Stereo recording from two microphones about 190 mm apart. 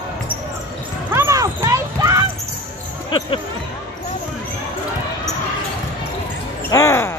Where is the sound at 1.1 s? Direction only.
15° right (ahead or behind).